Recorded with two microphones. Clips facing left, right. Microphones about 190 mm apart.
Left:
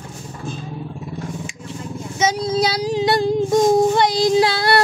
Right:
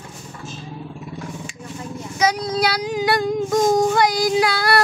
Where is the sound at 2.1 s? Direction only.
25° left (ahead or behind).